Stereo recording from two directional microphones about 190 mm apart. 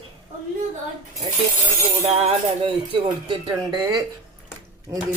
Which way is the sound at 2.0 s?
30° right (ahead or behind).